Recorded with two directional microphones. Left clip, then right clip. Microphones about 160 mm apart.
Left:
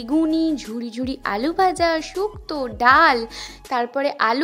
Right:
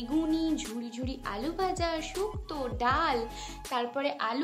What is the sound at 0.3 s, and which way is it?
A woman's voice, 50° left (ahead or behind).